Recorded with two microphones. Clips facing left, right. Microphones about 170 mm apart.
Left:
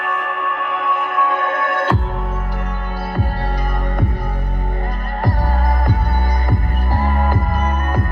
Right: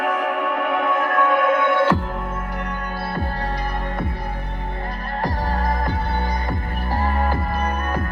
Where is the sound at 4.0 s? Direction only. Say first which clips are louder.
Left 4 dB; 50° left (ahead or behind).